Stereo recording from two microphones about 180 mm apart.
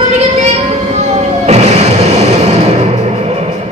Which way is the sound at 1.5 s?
35° right (ahead or behind).